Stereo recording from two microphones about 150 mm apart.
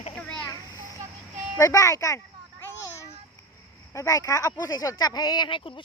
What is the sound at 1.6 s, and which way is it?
Speech, 20° left (ahead or behind).